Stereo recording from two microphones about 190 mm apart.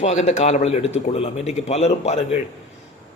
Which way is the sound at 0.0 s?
35° left (ahead or behind).